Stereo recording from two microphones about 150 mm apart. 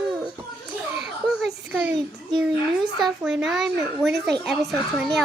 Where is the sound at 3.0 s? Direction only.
5° right (ahead or behind).